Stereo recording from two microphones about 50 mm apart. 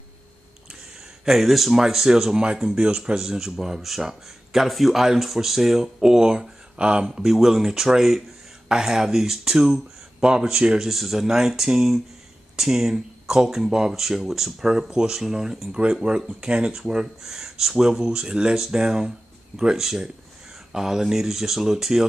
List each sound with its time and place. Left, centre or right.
1.2 s speech: centre
7.1 s speech: centre